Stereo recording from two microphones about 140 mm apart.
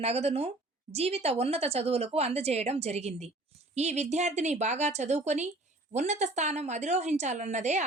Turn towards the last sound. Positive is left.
turn(degrees=-55)  # may be behind; listen again after turning